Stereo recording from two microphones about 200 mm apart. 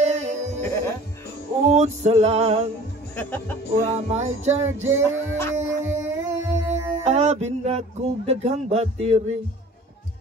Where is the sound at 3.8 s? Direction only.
35° right (ahead or behind).